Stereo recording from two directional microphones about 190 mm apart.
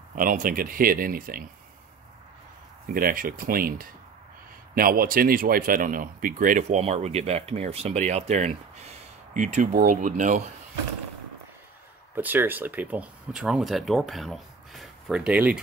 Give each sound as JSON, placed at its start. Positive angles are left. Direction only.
{"t": 0.1, "sound": "speech", "side_deg": -45}
{"t": 2.9, "sound": "speech", "side_deg": -50}
{"t": 12.2, "sound": "speech", "side_deg": -10}